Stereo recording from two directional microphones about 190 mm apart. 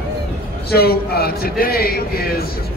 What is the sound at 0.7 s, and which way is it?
A man's voice, 55° left (ahead or behind).